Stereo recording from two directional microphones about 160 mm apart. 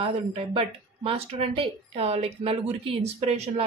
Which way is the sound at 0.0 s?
35° right (ahead or behind).